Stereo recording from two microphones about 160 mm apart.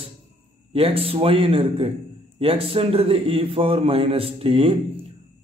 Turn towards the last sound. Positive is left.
turn(degrees=-35)  # may be behind; listen again after turning